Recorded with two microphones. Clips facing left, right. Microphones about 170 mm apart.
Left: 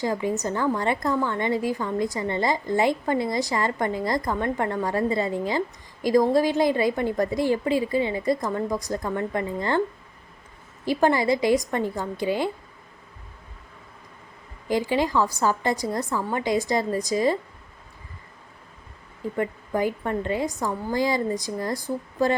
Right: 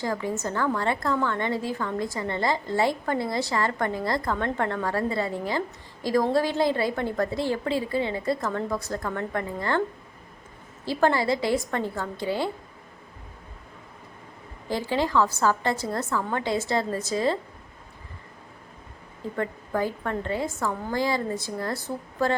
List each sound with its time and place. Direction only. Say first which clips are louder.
0.0 s a woman's voice: left 3 dB; 20° left (ahead or behind)
10.8 s a woman's voice: left 2 dB; 15° left (ahead or behind)
14.7 s a woman's voice: left 3 dB; 15° left (ahead or behind)
19.4 s a woman's voice: left 2 dB; 15° left (ahead or behind)